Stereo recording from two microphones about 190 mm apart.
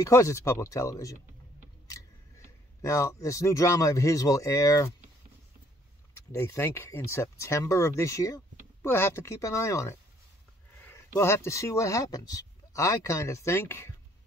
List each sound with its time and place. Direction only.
0.0 s a man's voice: 15° left (ahead or behind)
2.8 s a man's voice: 15° left (ahead or behind)
6.3 s a man's voice: 15° left (ahead or behind)